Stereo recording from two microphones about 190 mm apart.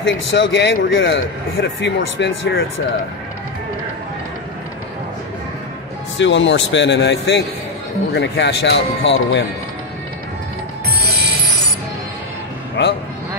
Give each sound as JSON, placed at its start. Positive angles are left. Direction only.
{"t": 0.0, "sound": "speech", "side_deg": 70}
{"t": 6.1, "sound": "speech", "side_deg": 75}
{"t": 11.0, "sound": "music", "side_deg": -55}
{"t": 12.8, "sound": "vehicle", "side_deg": 65}